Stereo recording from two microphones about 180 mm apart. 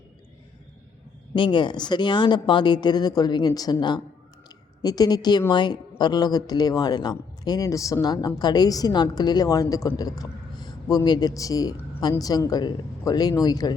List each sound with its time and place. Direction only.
1.4 s a woman's voice: 25° left (ahead or behind)